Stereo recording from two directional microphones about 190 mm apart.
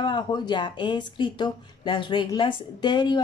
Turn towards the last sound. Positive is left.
turn(degrees=20)  # may be behind; listen again after turning